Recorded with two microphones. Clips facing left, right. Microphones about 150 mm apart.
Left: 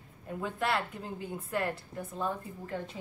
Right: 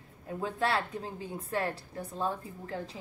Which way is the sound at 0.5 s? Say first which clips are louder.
Right 1 dB; 35° right (ahead or behind).